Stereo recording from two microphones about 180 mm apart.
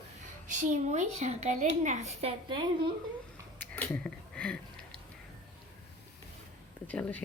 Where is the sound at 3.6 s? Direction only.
10° left (ahead or behind).